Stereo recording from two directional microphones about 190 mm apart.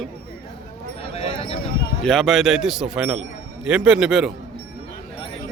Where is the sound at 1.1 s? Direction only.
30° left (ahead or behind).